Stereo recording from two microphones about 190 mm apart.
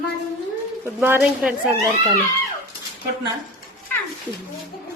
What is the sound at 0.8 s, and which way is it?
Speech, 10° right (ahead or behind).